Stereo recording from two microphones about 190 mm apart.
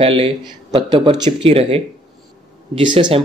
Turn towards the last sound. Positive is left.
turn(degrees=-25)  # may be behind; listen again after turning